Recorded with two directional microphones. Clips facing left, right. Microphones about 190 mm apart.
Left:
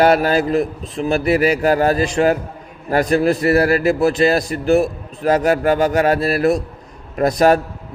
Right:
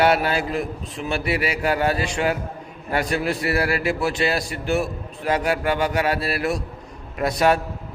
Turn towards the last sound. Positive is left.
turn(degrees=40)  # may be behind; listen again after turning